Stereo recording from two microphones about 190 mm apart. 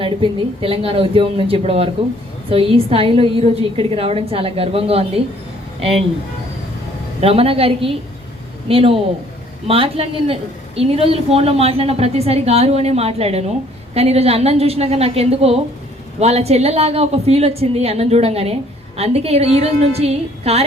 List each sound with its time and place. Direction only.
0.0 s a woman's voice: 30° right (ahead or behind)
7.2 s a woman's voice: 30° right (ahead or behind)